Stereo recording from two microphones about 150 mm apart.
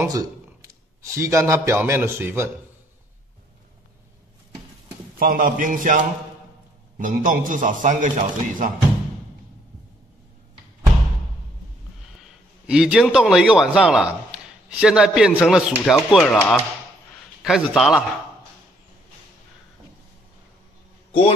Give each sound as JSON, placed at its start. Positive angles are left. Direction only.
{"t": 0.0, "sound": "a man's voice", "side_deg": -25}
{"t": 5.2, "sound": "a man's voice", "side_deg": -65}
{"t": 12.6, "sound": "a man's voice", "side_deg": -5}
{"t": 17.4, "sound": "a man's voice", "side_deg": -5}